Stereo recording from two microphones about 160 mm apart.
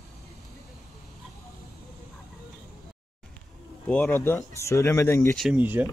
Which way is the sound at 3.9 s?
10° left (ahead or behind).